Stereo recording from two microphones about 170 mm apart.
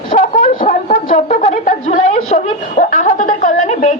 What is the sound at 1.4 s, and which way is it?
Chuckle, 45° left (ahead or behind).